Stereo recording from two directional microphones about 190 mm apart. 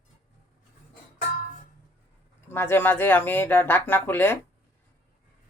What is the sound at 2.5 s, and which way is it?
Speech, 10° left (ahead or behind).